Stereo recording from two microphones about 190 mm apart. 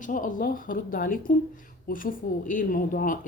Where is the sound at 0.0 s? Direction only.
45° left (ahead or behind).